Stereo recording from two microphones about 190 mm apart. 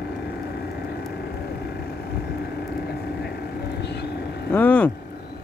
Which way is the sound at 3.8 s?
60° left (ahead or behind).